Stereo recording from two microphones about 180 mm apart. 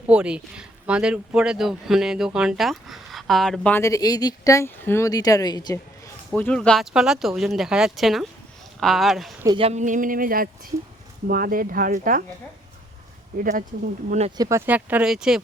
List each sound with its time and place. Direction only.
0.1 s speech: 5° right (ahead or behind); by 5.8 s 20° left (ahead or behind)
6.3 s speech: 5° left (ahead or behind)
9.6 s speech: 35° right (ahead or behind)
13.4 s speech: 50° right (ahead or behind)
14.1 s speech: 35° right (ahead or behind)
14.3 s speech: 20° right (ahead or behind)
14.7 s speech: 10° right (ahead or behind)